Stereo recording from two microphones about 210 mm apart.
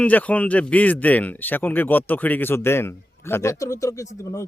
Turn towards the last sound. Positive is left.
turn(degrees=15)  # may be behind; listen again after turning